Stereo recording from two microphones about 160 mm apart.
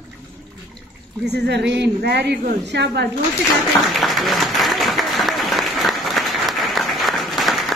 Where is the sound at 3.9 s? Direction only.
Centre (ahead or behind).